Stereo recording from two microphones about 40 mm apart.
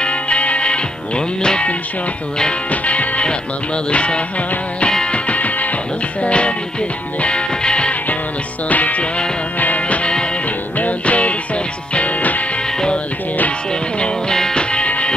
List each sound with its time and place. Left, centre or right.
0.0 s music: left
2.7 s music: left
8.6 s music: left
14.3 s music: centre
14.6 s music: left